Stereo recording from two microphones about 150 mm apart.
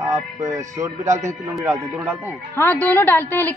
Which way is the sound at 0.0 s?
20° right (ahead or behind).